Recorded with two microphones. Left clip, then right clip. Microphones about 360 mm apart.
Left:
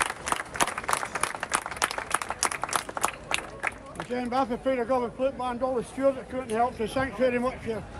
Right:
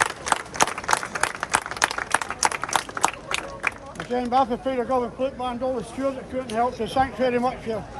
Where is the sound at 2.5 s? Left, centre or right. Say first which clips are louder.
Right 4 dB; right.